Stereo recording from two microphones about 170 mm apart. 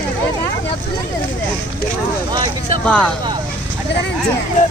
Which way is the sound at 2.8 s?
5° left (ahead or behind).